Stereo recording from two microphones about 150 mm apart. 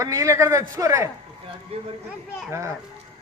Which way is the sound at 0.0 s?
20° right (ahead or behind).